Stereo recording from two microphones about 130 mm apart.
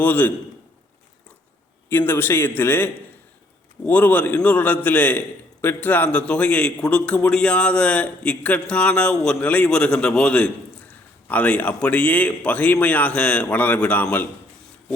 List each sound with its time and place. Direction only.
0.0 s a man's voice: 15° left (ahead or behind)
1.9 s a man's voice: 15° left (ahead or behind)